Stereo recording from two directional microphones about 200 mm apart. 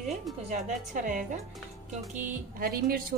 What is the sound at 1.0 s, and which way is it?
A woman's voice, 40° right (ahead or behind).